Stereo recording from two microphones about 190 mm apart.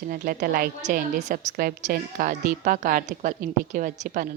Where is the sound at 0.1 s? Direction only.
50° right (ahead or behind).